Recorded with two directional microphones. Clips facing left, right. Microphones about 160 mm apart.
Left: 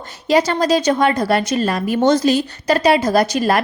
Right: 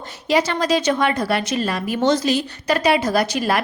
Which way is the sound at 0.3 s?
40° left (ahead or behind).